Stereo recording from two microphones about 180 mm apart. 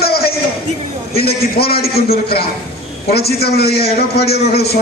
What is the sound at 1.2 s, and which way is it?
A man's voice, 60° left (ahead or behind).